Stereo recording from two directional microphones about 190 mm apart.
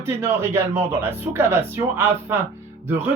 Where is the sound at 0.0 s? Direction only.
10° right (ahead or behind).